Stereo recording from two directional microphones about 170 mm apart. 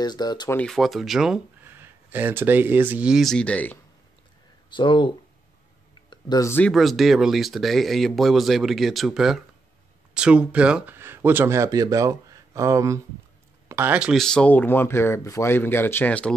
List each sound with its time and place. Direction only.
0.0 s speech: 25° left (ahead or behind)
0.6 s speech: centre (ahead or behind)
4.6 s speech: 30° left (ahead or behind)
6.0 s a sound: 25° left (ahead or behind)
6.6 s speech: centre (ahead or behind)